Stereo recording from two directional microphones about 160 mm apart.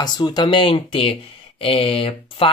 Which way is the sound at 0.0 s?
25° left (ahead or behind).